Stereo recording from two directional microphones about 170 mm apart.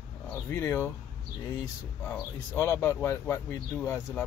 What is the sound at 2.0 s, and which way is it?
Speech, 15° left (ahead or behind).